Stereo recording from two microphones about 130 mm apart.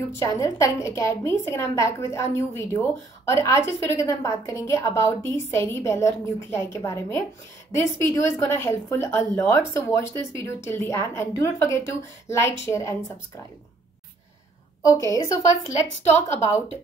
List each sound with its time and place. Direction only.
0.2 s a woman's voice: 25° left (ahead or behind)
14.8 s a woman's voice: 25° left (ahead or behind)